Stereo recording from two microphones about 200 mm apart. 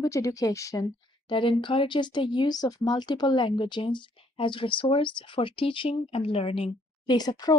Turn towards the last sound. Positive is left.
turn(degrees=20)  # may be behind; listen again after turning